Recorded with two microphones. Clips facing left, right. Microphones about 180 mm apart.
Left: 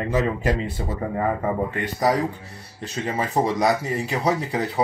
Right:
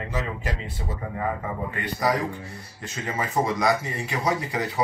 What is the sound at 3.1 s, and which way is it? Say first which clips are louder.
A man's voice: left 2 dB; 35° left (ahead or behind).